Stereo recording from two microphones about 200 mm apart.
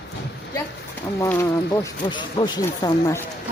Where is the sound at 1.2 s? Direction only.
15° left (ahead or behind).